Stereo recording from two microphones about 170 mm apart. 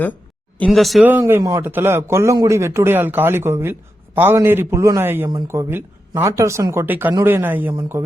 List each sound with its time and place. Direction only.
0.6 s speech: centre (ahead or behind)
1.0 s a man's voice: 10° right (ahead or behind)